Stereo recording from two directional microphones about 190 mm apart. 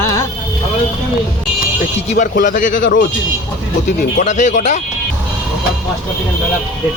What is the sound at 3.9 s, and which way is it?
Speech, 40° left (ahead or behind).